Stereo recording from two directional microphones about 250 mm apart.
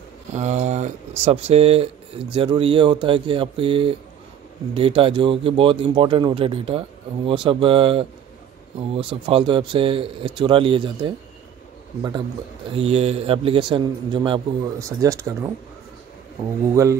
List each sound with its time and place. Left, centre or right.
0.3 s a man's voice: right
12.7 s a man's voice: right